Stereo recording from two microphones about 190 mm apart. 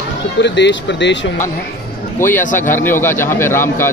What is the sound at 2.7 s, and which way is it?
A man's voice, 10° left (ahead or behind).